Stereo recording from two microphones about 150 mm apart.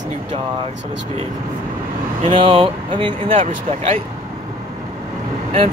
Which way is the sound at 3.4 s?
45° right (ahead or behind).